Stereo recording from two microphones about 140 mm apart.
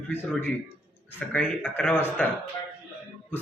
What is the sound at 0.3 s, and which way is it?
A man's voice, 10° left (ahead or behind).